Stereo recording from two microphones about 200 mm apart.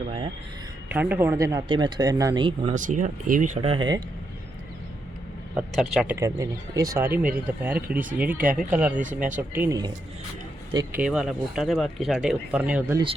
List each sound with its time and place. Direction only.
0.9 s speech: 5° right (ahead or behind); by 2.7 s 25° right (ahead or behind)
2.7 s speech: 40° right (ahead or behind); by 4.0 s 20° right (ahead or behind)
5.5 s speech: centre (ahead or behind)
6.1 s speech: 15° right (ahead or behind)
10.9 s speech: 5° right (ahead or behind)